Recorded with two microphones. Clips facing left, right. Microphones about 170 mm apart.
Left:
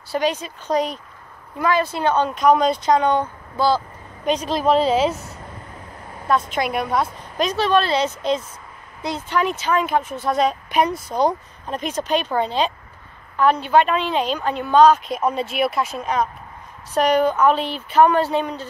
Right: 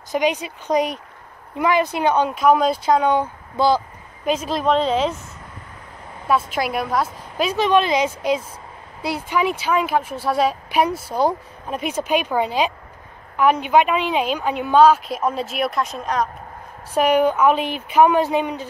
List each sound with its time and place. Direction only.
0.1 s a woman's voice: 15° right (ahead or behind)
3.5 s speech: 20° right (ahead or behind)
4.2 s a woman's voice: 5° right (ahead or behind)
6.2 s a woman's voice: 5° right (ahead or behind)
16.9 s a woman's voice: 10° right (ahead or behind)